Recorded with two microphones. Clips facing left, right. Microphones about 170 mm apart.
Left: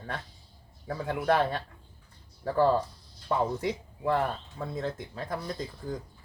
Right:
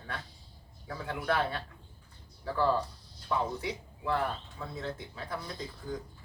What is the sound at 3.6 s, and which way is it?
Speech, 40° left (ahead or behind).